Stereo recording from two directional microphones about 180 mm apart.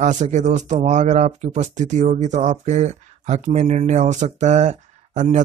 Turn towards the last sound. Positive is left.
turn(degrees=-45)  # may be behind; listen again after turning